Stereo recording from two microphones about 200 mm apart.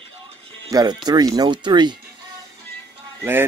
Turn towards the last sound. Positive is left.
turn(degrees=-10)  # may be behind; listen again after turning